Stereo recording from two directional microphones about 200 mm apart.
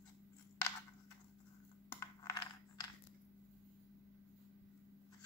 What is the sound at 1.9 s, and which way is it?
Coin, 15° left (ahead or behind).